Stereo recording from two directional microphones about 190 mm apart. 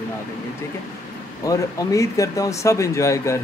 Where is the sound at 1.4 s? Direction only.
20° left (ahead or behind).